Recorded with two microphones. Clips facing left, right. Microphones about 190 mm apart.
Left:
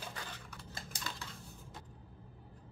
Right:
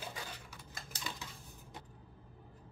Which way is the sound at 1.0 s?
15° right (ahead or behind).